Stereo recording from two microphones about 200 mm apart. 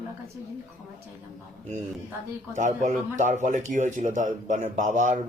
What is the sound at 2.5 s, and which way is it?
Speech, 40° right (ahead or behind).